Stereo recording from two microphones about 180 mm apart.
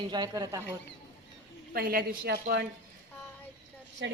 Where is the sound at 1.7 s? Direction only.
55° right (ahead or behind).